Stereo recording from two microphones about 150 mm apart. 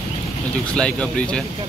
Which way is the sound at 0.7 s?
5° left (ahead or behind).